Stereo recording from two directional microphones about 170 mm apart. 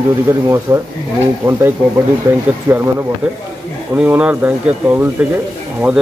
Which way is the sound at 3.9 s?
10° right (ahead or behind).